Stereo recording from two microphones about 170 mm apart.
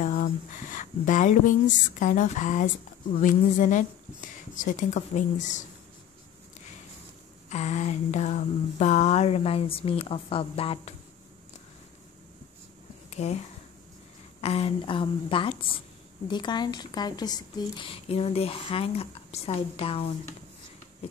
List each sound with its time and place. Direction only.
0.0 s speech: 50° left (ahead or behind)
7.4 s speech: 40° left (ahead or behind)
13.1 s speech: 40° left (ahead or behind)
14.4 s speech: 35° left (ahead or behind)